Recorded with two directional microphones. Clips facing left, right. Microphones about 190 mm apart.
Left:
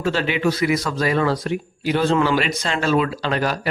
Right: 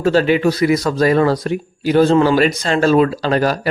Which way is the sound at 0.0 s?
40° right (ahead or behind).